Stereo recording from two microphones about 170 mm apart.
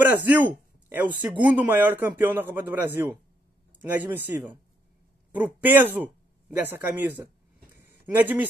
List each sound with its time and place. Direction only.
0.0 s a man's voice: 10° right (ahead or behind)
5.3 s a man's voice: 10° right (ahead or behind)
7.7 s a sound: 10° right (ahead or behind)